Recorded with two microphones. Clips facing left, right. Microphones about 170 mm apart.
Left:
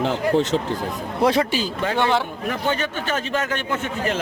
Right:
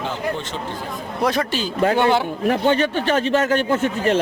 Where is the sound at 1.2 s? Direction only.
25° left (ahead or behind).